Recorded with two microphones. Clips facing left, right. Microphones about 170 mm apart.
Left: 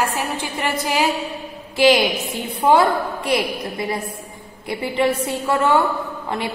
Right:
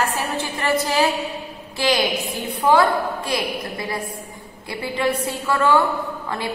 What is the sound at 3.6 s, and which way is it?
A woman's voice, 25° left (ahead or behind).